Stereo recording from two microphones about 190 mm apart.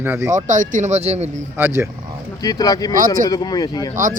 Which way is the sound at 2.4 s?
20° left (ahead or behind).